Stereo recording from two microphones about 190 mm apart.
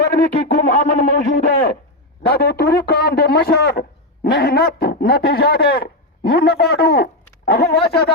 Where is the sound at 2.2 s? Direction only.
55° left (ahead or behind).